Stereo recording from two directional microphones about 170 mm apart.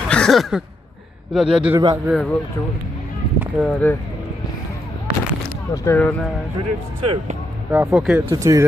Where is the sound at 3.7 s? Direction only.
10° left (ahead or behind).